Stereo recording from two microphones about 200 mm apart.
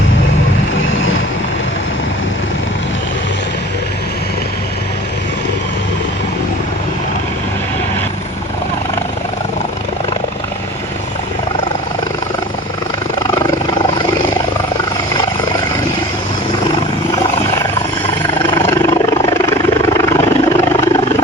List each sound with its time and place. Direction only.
18.8 s vehicle: 15° left (ahead or behind)